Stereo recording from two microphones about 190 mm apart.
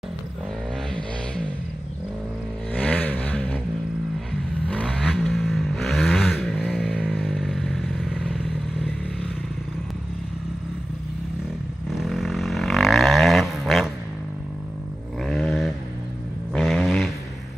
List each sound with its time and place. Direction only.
2.7 s vehicle: 5° left (ahead or behind)
11.9 s vehicle: centre (ahead or behind)
15.2 s vehicle: centre (ahead or behind)
16.5 s a sound: centre (ahead or behind)